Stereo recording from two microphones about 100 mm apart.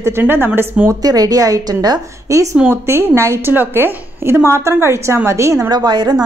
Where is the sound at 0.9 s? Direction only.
40° right (ahead or behind).